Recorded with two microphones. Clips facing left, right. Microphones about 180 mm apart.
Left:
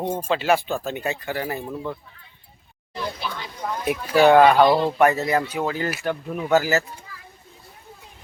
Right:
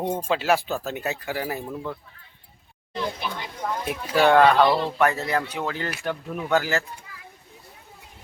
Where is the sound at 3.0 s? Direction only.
20° right (ahead or behind).